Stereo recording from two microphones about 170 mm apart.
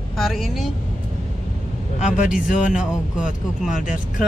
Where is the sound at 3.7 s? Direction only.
50° left (ahead or behind).